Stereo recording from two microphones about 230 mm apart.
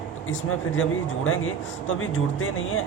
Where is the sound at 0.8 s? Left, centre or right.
Left.